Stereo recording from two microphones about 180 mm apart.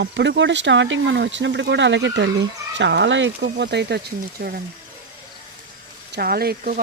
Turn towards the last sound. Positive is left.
turn(degrees=-55)  # may be behind; listen again after turning